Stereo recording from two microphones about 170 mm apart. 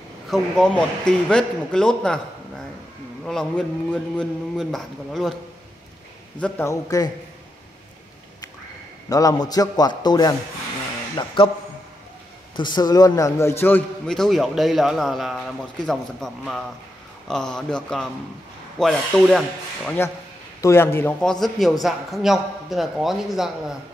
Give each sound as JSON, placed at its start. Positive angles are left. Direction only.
{"t": 0.3, "sound": "a man's voice", "side_deg": 5}
{"t": 3.3, "sound": "a man's voice", "side_deg": 5}
{"t": 6.4, "sound": "a man's voice", "side_deg": 15}
{"t": 9.1, "sound": "a man's voice", "side_deg": 20}
{"t": 12.5, "sound": "a man's voice", "side_deg": 25}
{"t": 20.6, "sound": "a man's voice", "side_deg": 15}